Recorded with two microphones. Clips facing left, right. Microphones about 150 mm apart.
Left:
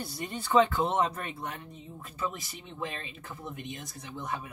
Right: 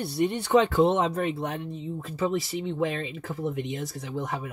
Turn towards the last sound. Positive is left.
turn(degrees=-90)